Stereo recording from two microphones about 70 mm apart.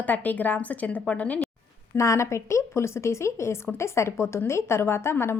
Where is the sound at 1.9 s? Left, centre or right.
Left.